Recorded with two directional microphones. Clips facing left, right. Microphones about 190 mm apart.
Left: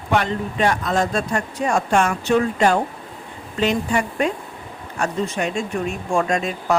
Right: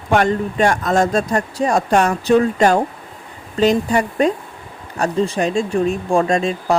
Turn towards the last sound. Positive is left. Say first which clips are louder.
# right 4 dB
turn(degrees=-30)  # may be behind; listen again after turning